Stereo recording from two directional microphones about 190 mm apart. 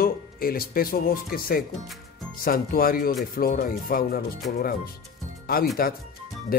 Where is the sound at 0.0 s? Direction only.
50° left (ahead or behind).